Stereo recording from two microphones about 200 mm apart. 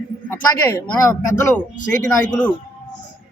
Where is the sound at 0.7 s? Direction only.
10° left (ahead or behind).